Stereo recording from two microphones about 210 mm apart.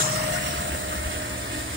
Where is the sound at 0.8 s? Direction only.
65° right (ahead or behind).